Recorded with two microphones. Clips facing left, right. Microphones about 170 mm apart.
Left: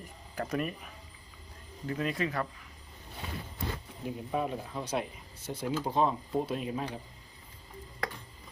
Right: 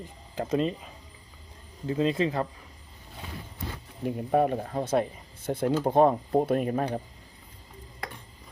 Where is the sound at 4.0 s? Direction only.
55° right (ahead or behind).